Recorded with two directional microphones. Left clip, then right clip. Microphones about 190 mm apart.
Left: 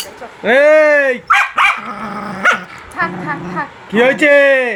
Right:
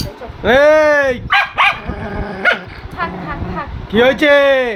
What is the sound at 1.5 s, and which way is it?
Dog, centre (ahead or behind).